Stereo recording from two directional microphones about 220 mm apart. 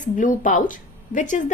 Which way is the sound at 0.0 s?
35° left (ahead or behind).